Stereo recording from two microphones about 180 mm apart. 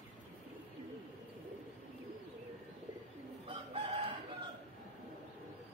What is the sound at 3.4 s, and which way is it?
Chicken, 30° right (ahead or behind).